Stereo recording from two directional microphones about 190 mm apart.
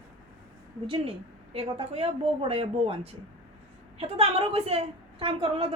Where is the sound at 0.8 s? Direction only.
30° right (ahead or behind).